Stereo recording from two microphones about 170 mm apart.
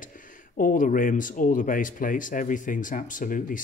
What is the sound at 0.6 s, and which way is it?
Speech, 50° left (ahead or behind).